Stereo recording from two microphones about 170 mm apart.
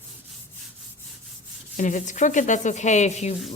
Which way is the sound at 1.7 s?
50° left (ahead or behind).